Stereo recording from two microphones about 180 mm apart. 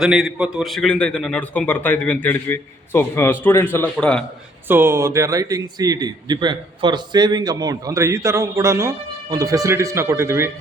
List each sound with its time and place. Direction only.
0.0 s a man's voice: 5° right (ahead or behind)
4.7 s a man's voice: 15° right (ahead or behind)